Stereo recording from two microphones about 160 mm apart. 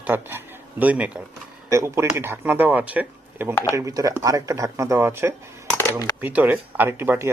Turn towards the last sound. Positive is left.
turn(degrees=-15)  # may be behind; listen again after turning